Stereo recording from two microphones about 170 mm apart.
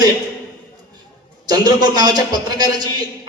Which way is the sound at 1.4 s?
25° right (ahead or behind).